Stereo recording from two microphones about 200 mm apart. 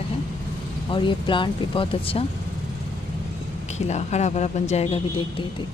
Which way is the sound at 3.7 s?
35° left (ahead or behind).